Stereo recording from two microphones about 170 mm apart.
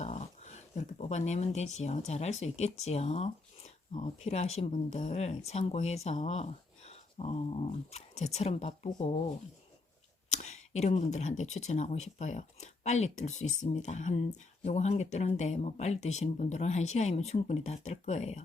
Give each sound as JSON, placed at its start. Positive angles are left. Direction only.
{"t": 0.0, "sound": "speech", "side_deg": 40}
{"t": 10.2, "sound": "speech", "side_deg": 40}